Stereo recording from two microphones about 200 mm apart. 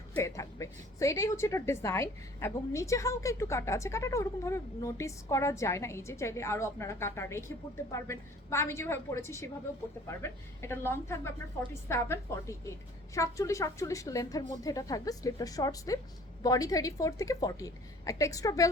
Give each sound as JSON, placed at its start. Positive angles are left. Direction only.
{"t": 0.1, "sound": "a woman's voice", "side_deg": 15}
{"t": 10.6, "sound": "a woman's voice", "side_deg": 10}